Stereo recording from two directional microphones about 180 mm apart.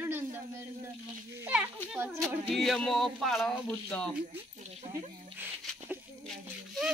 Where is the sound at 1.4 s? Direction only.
5° right (ahead or behind).